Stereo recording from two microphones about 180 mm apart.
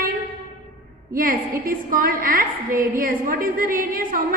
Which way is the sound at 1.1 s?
55° right (ahead or behind).